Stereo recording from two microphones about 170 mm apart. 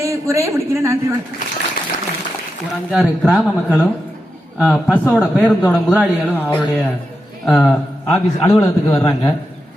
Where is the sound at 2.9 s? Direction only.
Centre (ahead or behind).